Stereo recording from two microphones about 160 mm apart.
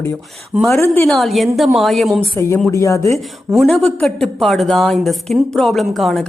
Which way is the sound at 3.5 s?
Centre (ahead or behind).